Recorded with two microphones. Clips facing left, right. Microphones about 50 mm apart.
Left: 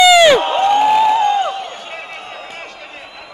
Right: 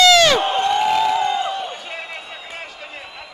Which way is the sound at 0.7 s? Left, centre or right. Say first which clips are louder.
Left 7 dB; centre.